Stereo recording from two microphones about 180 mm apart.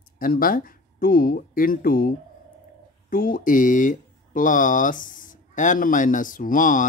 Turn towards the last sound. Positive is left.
turn(degrees=45)  # may be behind; listen again after turning